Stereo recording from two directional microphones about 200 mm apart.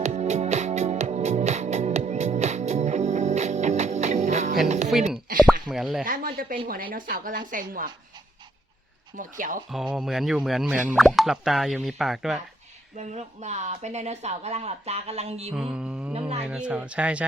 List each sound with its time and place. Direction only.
0.0 s music: 35° right (ahead or behind)
4.9 s speech: centre (ahead or behind)
6.1 s speech: 45° right (ahead or behind)
9.1 s speech: 40° right (ahead or behind)
9.6 s speech: centre (ahead or behind)
13.0 s speech: 35° right (ahead or behind)
15.5 s speech: 5° right (ahead or behind)